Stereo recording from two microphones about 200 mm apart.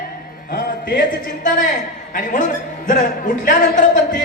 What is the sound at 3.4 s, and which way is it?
Speech, 40° left (ahead or behind).